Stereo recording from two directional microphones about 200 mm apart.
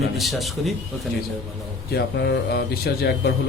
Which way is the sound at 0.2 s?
Centre (ahead or behind).